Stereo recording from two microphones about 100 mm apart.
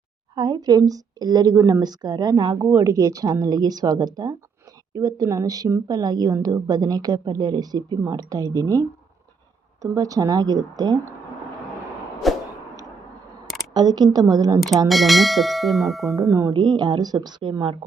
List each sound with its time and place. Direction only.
0.3 s a woman's voice: 45° right (ahead or behind)
12.2 s whip: centre (ahead or behind)
13.7 s a woman's voice: 45° right (ahead or behind)
14.8 s speech: centre (ahead or behind)
16.3 s a woman's voice: 30° right (ahead or behind)
16.6 s a woman's voice: 45° right (ahead or behind)